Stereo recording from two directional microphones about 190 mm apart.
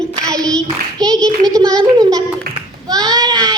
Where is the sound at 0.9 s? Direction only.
20° right (ahead or behind).